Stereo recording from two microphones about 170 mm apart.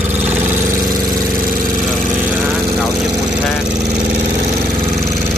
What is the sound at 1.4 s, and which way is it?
Engine, 55° right (ahead or behind).